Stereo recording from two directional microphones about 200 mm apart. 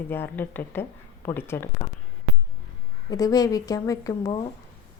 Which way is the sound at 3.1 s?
20° left (ahead or behind).